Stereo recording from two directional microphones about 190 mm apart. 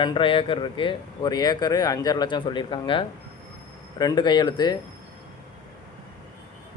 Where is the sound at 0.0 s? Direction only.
25° left (ahead or behind).